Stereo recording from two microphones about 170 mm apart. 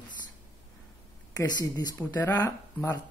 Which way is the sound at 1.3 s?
20° left (ahead or behind).